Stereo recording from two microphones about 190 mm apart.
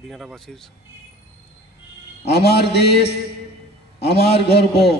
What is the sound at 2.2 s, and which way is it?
A man's voice, 60° left (ahead or behind).